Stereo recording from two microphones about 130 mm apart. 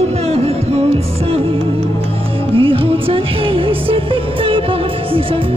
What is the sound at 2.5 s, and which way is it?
Music, 45° right (ahead or behind).